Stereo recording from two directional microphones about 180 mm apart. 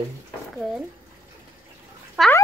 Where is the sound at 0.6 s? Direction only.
Centre (ahead or behind).